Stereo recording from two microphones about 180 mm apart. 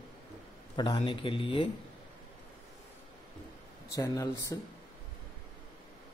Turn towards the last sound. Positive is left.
turn(degrees=20)  # may be behind; listen again after turning